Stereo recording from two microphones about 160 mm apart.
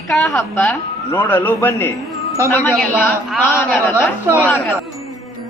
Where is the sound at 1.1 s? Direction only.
10° left (ahead or behind).